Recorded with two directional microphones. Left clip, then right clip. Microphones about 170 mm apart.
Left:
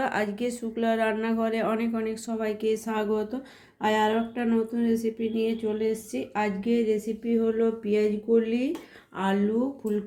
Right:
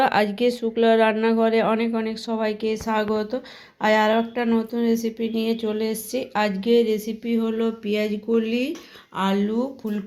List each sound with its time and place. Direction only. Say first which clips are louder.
0.0 s speech: right 8 dB; 25° right (ahead or behind); by 9.4 s 45° right (ahead or behind)